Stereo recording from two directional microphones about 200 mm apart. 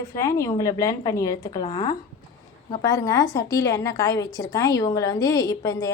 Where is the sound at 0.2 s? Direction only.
15° left (ahead or behind).